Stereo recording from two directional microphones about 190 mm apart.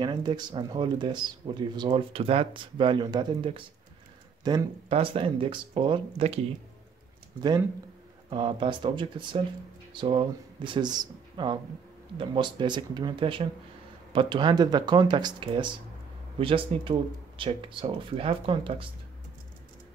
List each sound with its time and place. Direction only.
0.0 s speech: 25° right (ahead or behind)